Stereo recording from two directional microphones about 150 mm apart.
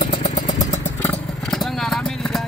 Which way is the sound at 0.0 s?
50° left (ahead or behind).